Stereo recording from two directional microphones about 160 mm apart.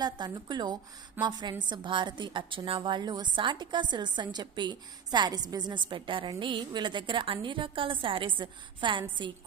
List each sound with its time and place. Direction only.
0.0 s a woman's voice: 25° right (ahead or behind)